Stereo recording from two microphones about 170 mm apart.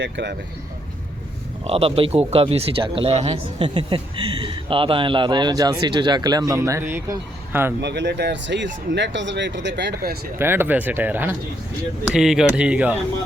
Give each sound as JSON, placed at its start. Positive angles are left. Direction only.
{"t": 0.0, "sound": "speech", "side_deg": -90}
{"t": 1.6, "sound": "speech", "side_deg": -35}
{"t": 7.8, "sound": "speech", "side_deg": -90}
{"t": 10.3, "sound": "speech", "side_deg": -15}